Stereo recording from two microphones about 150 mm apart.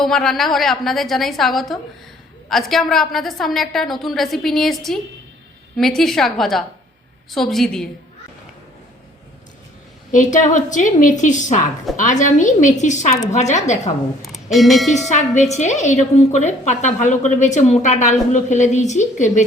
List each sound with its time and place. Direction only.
0.0 s a woman's voice: 5° left (ahead or behind)
10.1 s a woman's voice: 60° left (ahead or behind)
14.2 s speech: centre (ahead or behind)
15.1 s a woman's voice: 50° left (ahead or behind)